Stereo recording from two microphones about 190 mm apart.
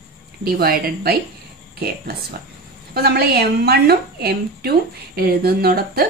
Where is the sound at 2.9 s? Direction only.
55° right (ahead or behind).